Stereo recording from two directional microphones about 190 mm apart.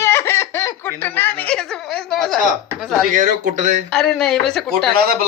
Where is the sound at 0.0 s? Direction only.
15° left (ahead or behind).